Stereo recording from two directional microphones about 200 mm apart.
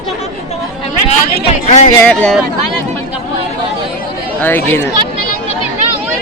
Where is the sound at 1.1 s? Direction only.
30° left (ahead or behind).